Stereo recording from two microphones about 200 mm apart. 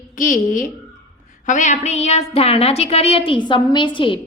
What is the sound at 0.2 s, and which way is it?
A woman's voice, 40° left (ahead or behind).